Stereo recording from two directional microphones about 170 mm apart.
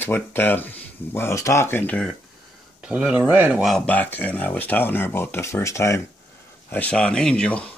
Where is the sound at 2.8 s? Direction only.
5° right (ahead or behind).